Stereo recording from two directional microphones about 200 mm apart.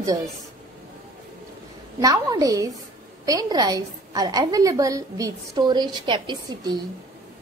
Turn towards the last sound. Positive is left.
turn(degrees=-20)  # may be behind; listen again after turning